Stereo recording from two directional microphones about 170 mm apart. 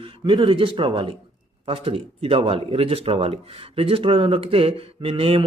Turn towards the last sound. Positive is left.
turn(degrees=-35)  # may be behind; listen again after turning